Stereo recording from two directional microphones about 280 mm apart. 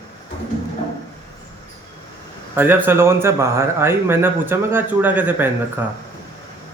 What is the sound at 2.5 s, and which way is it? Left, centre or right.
A man's voice, centre.